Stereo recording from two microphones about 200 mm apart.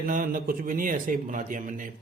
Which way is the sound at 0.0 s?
40° right (ahead or behind).